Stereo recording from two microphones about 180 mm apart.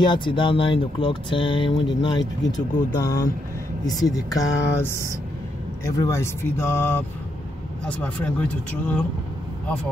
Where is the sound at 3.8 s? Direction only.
20° left (ahead or behind).